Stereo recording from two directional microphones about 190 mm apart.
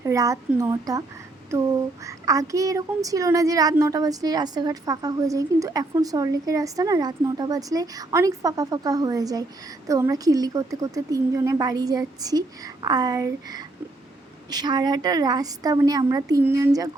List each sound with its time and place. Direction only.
0.0 s a woman's voice: 15° right (ahead or behind)